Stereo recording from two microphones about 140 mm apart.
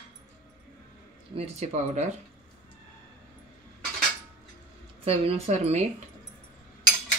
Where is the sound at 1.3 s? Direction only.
50° right (ahead or behind).